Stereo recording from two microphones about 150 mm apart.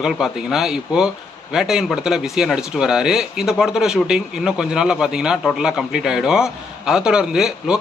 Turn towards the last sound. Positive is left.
turn(degrees=-5)  # may be behind; listen again after turning